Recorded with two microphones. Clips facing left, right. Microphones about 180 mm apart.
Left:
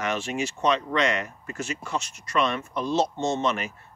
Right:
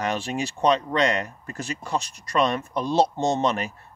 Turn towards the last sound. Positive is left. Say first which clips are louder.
# right 2 dB
turn(degrees=-35)  # may be behind; listen again after turning